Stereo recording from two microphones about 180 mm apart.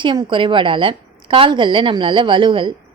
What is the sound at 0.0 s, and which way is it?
A woman's voice, 25° right (ahead or behind).